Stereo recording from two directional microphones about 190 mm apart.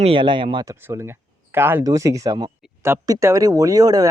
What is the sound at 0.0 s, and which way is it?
Speech, 25° right (ahead or behind).